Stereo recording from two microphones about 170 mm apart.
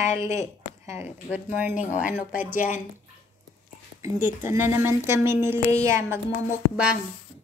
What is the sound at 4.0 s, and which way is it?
A woman's voice, 15° right (ahead or behind).